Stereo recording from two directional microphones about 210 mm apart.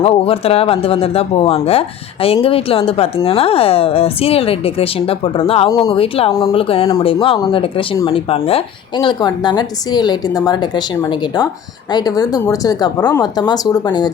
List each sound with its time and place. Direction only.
0.0 s speech: 30° left (ahead or behind)